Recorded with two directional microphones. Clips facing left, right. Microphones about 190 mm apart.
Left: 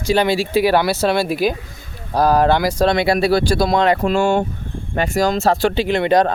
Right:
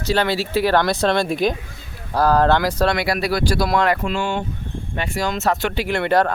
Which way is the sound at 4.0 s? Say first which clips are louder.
Left 7 dB; 45° left (ahead or behind).